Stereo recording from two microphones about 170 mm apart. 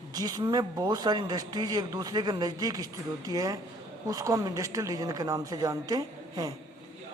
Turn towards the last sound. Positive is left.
turn(degrees=-20)  # may be behind; listen again after turning